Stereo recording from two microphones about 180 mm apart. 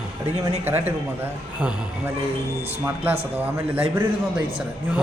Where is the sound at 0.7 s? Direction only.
10° right (ahead or behind).